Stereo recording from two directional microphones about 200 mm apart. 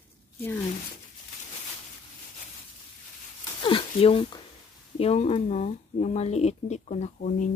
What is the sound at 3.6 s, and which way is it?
Speech, 25° left (ahead or behind).